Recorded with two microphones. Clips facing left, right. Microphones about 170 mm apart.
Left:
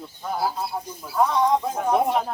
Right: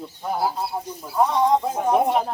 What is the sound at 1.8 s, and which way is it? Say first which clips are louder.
Speech: right 2 dB; 10° right (ahead or behind).